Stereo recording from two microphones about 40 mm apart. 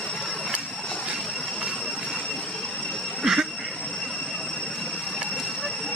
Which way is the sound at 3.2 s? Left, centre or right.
Centre.